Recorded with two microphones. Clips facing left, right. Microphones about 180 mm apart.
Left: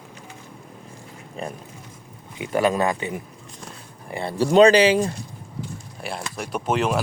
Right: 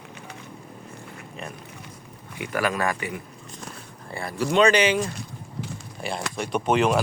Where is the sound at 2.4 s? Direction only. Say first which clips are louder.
Left 5 dB; 25° left (ahead or behind).